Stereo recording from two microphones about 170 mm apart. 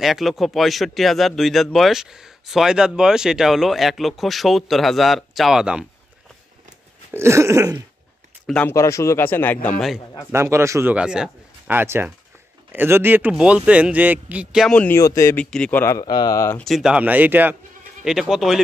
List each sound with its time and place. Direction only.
0.0 s speech: centre (ahead or behind)
7.1 s speech: 15° right (ahead or behind)
8.5 s speech: 5° left (ahead or behind)
8.7 s speech: 15° left (ahead or behind)
10.3 s speech: 15° right (ahead or behind)
14.8 s speech: 15° left (ahead or behind)
16.5 s speech: centre (ahead or behind)